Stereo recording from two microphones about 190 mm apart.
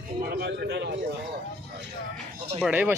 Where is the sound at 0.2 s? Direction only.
55° right (ahead or behind).